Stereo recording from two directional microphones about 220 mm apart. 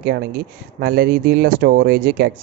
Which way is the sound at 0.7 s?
45° right (ahead or behind).